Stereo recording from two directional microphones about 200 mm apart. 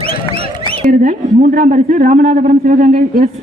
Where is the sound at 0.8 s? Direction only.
40° right (ahead or behind).